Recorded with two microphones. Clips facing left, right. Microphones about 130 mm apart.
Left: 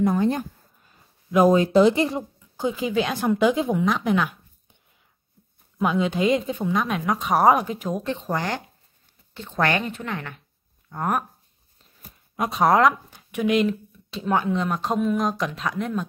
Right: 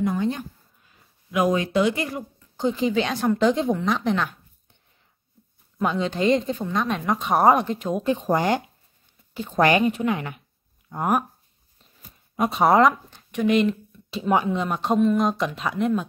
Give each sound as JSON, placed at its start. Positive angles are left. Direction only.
{"t": 0.0, "sound": "speech", "side_deg": 45}
{"t": 1.3, "sound": "speech", "side_deg": 30}
{"t": 2.5, "sound": "speech", "side_deg": 5}
{"t": 5.8, "sound": "speech", "side_deg": 5}
{"t": 8.3, "sound": "speech", "side_deg": -20}
{"t": 12.4, "sound": "speech", "side_deg": 0}